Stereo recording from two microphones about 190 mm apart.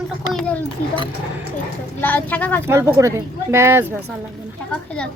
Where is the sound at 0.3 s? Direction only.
5° left (ahead or behind).